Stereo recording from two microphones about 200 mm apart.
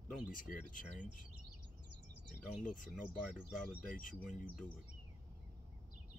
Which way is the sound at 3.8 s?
45° left (ahead or behind).